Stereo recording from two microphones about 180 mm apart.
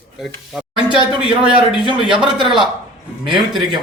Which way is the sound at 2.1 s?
Centre (ahead or behind).